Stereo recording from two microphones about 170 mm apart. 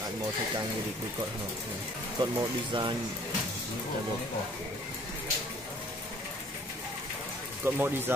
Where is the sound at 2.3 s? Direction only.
25° right (ahead or behind).